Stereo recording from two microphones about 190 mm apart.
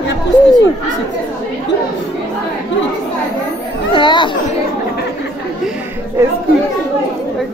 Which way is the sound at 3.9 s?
25° left (ahead or behind).